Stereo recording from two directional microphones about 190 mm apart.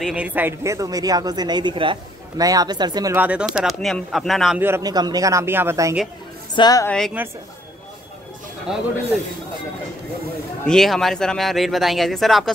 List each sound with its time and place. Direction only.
0.0 s speech: 5° right (ahead or behind)
3.2 s speech: 5° right (ahead or behind)
4.6 s speech: 15° right (ahead or behind)
6.5 s a woman's voice: 20° left (ahead or behind)
7.2 s speech: 10° right (ahead or behind)
8.7 s speech: 5° right (ahead or behind)
10.7 s speech: centre (ahead or behind)